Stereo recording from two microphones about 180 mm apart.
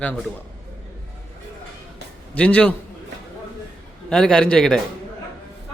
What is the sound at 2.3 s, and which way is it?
Speech, 5° left (ahead or behind).